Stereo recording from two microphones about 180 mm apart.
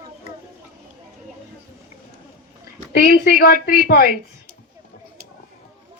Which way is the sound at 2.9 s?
65° left (ahead or behind).